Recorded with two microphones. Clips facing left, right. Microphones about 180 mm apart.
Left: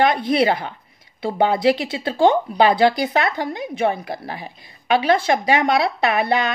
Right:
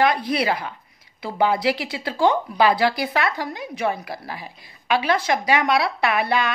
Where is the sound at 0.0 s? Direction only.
25° left (ahead or behind).